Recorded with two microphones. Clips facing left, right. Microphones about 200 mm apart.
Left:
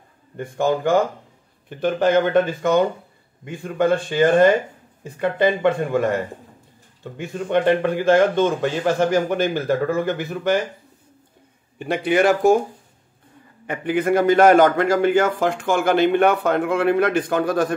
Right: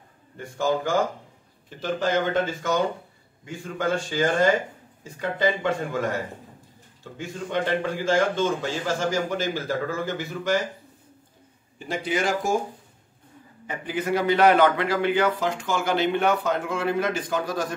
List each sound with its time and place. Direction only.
0.4 s a man's voice: 55° left (ahead or behind)
11.8 s a man's voice: 65° left (ahead or behind)
13.7 s a man's voice: 60° left (ahead or behind)